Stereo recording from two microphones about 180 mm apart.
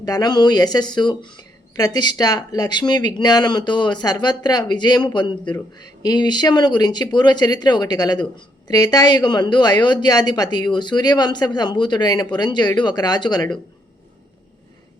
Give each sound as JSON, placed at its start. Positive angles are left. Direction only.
{"t": 0.0, "sound": "speech", "side_deg": 20}